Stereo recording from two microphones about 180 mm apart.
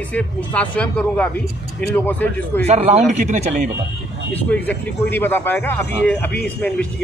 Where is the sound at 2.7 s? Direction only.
35° right (ahead or behind).